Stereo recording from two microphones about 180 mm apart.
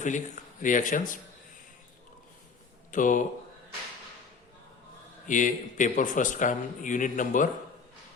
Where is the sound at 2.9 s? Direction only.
45° left (ahead or behind).